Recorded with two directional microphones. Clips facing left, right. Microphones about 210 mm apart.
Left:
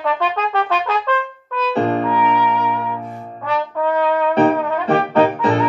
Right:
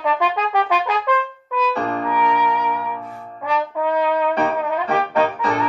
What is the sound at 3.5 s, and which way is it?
Brass instrument, 10° right (ahead or behind).